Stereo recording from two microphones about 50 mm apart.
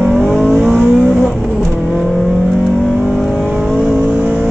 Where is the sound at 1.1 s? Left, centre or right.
Centre.